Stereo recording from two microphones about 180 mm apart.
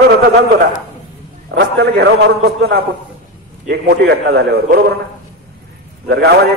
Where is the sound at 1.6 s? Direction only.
70° right (ahead or behind).